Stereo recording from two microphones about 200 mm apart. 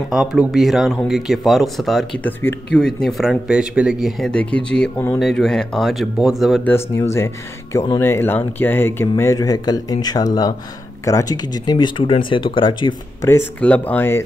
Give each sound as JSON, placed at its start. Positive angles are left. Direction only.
{"t": 0.1, "sound": "speech", "side_deg": -5}
{"t": 7.0, "sound": "speech", "side_deg": 15}
{"t": 13.6, "sound": "speech", "side_deg": 5}